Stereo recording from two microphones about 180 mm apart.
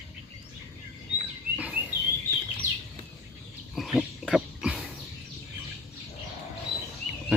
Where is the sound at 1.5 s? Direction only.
5° right (ahead or behind).